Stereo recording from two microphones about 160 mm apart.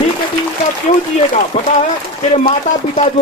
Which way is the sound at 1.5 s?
35° left (ahead or behind).